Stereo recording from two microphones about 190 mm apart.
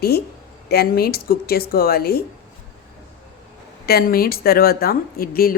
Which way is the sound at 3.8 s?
55° left (ahead or behind).